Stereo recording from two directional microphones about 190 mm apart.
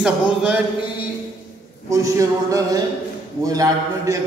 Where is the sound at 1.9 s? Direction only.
15° right (ahead or behind).